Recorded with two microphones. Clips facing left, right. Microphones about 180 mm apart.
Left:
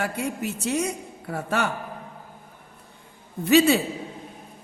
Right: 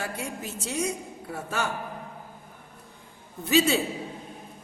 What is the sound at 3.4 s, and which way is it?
Speech, 65° left (ahead or behind).